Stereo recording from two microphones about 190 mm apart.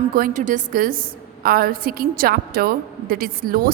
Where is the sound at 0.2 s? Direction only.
40° right (ahead or behind).